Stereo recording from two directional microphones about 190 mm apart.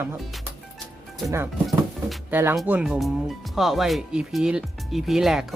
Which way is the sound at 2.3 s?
10° right (ahead or behind).